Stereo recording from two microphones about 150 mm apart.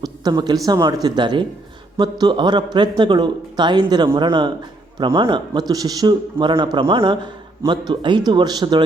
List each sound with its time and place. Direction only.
0.0 s a man's voice: 25° right (ahead or behind)